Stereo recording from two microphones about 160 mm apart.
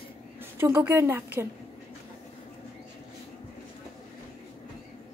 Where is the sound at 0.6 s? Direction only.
15° right (ahead or behind).